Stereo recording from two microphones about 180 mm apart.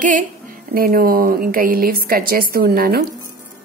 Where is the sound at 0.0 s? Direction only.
45° right (ahead or behind); by 3.2 s 65° right (ahead or behind).